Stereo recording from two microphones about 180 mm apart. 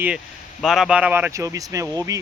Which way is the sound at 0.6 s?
Centre (ahead or behind).